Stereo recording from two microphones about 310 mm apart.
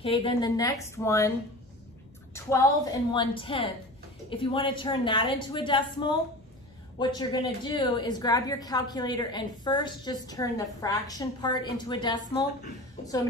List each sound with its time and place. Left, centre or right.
0.0 s a woman's voice: centre
2.3 s a woman's voice: centre